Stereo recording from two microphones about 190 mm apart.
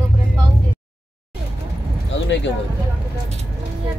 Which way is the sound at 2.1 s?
70° left (ahead or behind).